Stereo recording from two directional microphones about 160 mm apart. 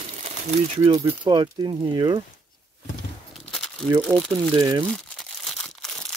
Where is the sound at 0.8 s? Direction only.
40° right (ahead or behind).